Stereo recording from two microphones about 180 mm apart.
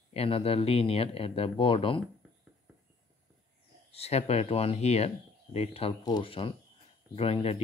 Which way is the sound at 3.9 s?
35° left (ahead or behind).